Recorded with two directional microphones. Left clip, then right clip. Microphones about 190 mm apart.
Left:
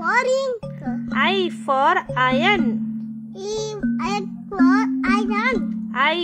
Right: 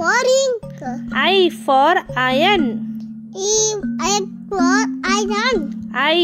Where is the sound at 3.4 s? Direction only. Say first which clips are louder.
Right 7 dB; 20° right (ahead or behind).